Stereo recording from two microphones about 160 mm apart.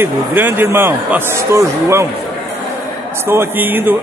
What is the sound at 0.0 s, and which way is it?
Speech, 15° right (ahead or behind).